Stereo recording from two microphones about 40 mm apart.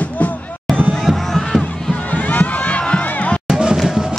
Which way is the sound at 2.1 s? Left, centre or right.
Left.